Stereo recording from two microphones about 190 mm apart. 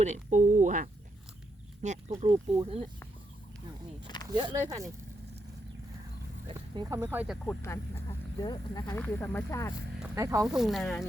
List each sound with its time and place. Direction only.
0.0 s speech: 40° right (ahead or behind)
4.0 s a sound: 25° left (ahead or behind)
4.3 s speech: 20° right (ahead or behind)
6.5 s speech: 20° right (ahead or behind)
7.4 s speech: 15° left (ahead or behind)
9.0 s speech: 10° left (ahead or behind)
10.2 s speech: 15° right (ahead or behind)
10.4 s speech: centre (ahead or behind)